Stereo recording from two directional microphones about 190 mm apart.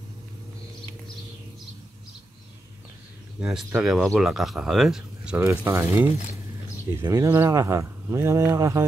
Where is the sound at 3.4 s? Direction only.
5° right (ahead or behind).